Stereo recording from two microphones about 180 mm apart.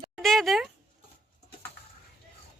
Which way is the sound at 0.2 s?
Centre (ahead or behind).